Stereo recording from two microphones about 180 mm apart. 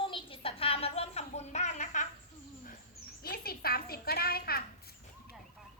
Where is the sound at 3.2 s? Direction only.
55° left (ahead or behind).